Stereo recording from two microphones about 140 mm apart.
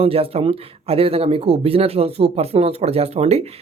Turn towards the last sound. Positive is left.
turn(degrees=-50)  # may be behind; listen again after turning